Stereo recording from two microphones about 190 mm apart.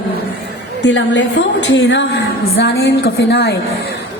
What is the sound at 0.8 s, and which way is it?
A woman's voice, 70° left (ahead or behind).